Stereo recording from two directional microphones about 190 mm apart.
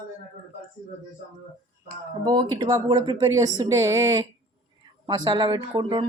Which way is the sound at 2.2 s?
25° right (ahead or behind).